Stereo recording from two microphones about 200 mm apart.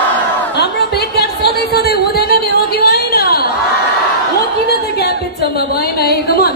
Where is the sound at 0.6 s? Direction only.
55° left (ahead or behind).